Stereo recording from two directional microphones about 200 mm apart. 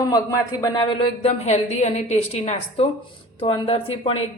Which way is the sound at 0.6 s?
20° left (ahead or behind).